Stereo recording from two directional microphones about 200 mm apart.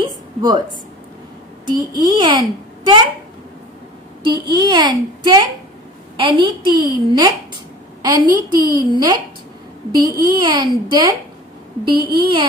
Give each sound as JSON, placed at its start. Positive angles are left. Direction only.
{"t": 0.0, "sound": "a sound", "side_deg": -20}
{"t": 1.7, "sound": "a child's voice", "side_deg": -20}
{"t": 4.2, "sound": "a child's voice", "side_deg": -20}